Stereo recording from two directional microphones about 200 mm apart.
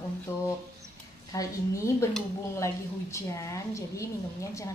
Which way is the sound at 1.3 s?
15° left (ahead or behind).